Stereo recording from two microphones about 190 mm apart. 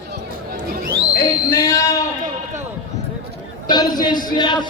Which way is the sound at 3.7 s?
20° left (ahead or behind).